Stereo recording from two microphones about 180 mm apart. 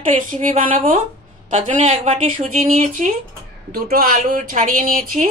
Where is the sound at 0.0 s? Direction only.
45° right (ahead or behind).